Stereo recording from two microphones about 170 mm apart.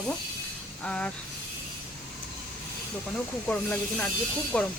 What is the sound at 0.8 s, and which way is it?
Speech, 5° left (ahead or behind).